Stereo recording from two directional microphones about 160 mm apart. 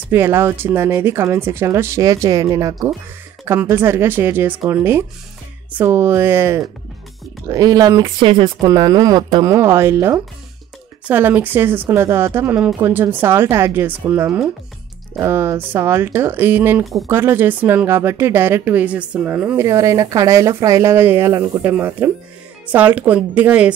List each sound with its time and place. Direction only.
0.1 s speech: 15° right (ahead or behind)